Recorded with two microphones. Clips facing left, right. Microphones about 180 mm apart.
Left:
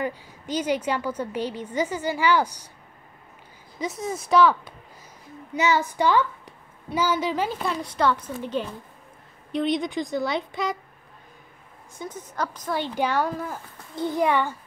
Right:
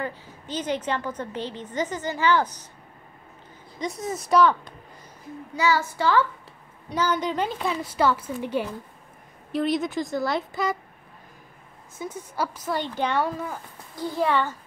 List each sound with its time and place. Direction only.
0.0 s a woman's voice: 10° left (ahead or behind)
3.8 s a woman's voice: centre (ahead or behind)
5.5 s a woman's voice: 20° left (ahead or behind); by 10.8 s centre (ahead or behind)
12.0 s a woman's voice: 10° right (ahead or behind)
12.7 s a woman's voice: 5° left (ahead or behind)
13.9 s a woman's voice: 20° left (ahead or behind)